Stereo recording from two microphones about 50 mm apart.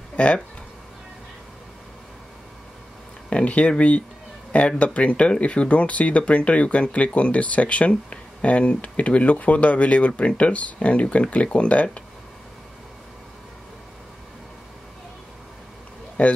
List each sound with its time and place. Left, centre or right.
0.1 s a sound: left
3.3 s speech: left
16.2 s speech: left